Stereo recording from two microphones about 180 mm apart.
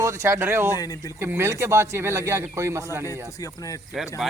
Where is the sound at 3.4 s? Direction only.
20° left (ahead or behind).